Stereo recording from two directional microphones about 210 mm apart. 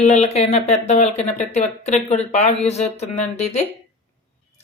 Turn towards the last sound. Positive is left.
turn(degrees=30)  # may be behind; listen again after turning